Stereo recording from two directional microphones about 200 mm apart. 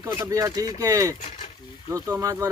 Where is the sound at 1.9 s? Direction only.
15° right (ahead or behind).